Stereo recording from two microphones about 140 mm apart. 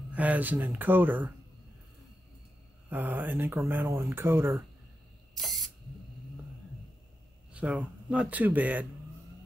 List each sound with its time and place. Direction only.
0.1 s speech: 10° right (ahead or behind)
2.9 s speech: 10° right (ahead or behind)
5.3 s spray: centre (ahead or behind)
7.5 s speech: 10° right (ahead or behind)